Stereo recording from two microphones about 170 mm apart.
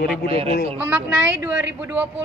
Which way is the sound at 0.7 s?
10° right (ahead or behind).